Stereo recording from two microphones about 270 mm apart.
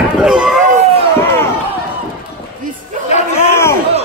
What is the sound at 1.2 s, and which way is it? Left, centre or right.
Run, centre.